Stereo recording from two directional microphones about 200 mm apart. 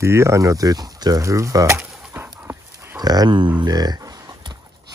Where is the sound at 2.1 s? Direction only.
10° right (ahead or behind).